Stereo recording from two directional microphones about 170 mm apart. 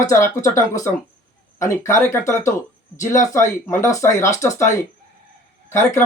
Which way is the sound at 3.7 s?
15° left (ahead or behind).